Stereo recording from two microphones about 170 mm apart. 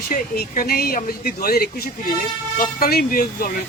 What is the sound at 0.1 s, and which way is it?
Speech, 60° left (ahead or behind).